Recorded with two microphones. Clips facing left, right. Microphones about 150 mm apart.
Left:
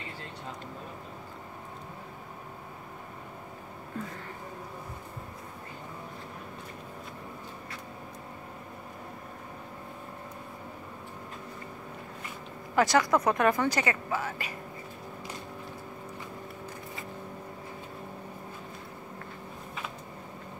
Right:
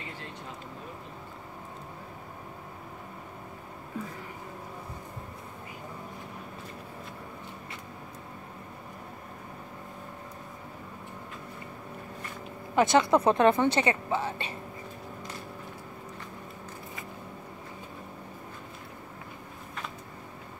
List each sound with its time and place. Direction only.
12.7 s a woman's voice: 25° right (ahead or behind)